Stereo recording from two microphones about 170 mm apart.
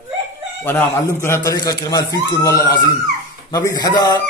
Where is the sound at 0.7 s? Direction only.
10° left (ahead or behind).